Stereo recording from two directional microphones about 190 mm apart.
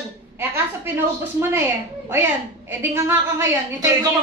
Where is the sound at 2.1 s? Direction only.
10° right (ahead or behind).